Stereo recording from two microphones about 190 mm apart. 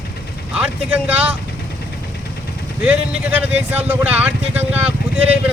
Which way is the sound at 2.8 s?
10° right (ahead or behind).